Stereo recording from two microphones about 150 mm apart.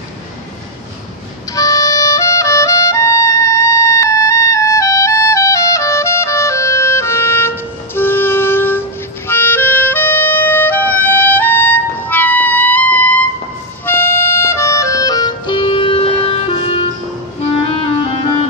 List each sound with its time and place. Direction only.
1.5 s music: 25° left (ahead or behind); by 16.8 s 40° left (ahead or behind)